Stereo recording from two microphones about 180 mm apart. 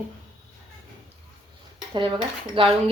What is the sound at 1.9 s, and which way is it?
Speech, 25° right (ahead or behind).